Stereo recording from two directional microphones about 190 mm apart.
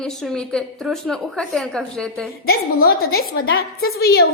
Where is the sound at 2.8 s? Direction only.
50° left (ahead or behind).